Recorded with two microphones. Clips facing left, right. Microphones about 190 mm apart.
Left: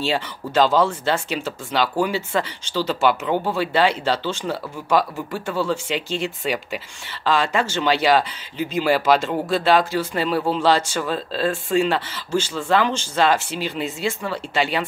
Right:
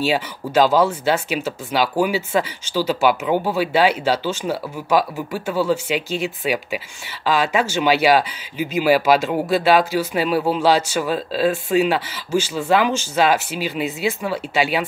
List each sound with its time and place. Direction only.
0.0 s speech: 5° right (ahead or behind)